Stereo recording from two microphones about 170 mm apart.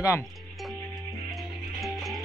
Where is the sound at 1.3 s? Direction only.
Centre (ahead or behind).